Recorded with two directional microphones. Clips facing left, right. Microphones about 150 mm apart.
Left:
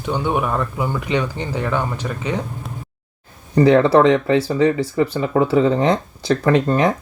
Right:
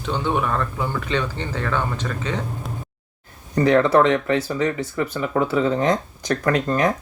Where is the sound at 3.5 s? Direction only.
30° left (ahead or behind).